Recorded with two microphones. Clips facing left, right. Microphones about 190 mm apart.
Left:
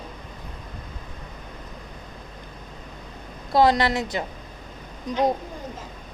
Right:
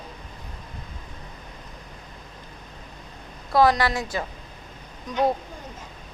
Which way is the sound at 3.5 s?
25° left (ahead or behind).